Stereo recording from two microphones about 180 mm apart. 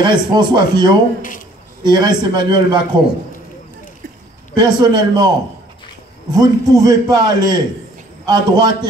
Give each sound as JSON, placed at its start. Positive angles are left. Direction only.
{"t": 0.0, "sound": "a man's voice", "side_deg": -25}
{"t": 4.6, "sound": "a man's voice", "side_deg": -25}
{"t": 6.3, "sound": "a man's voice", "side_deg": -20}